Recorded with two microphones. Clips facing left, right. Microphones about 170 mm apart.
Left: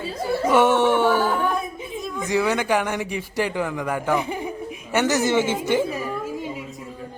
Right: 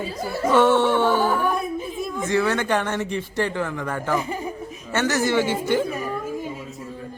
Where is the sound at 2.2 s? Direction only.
15° left (ahead or behind).